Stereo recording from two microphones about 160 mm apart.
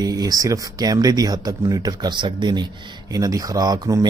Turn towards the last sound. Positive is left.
turn(degrees=-20)  # may be behind; listen again after turning